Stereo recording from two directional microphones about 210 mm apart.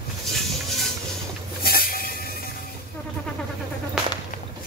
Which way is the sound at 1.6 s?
45° left (ahead or behind).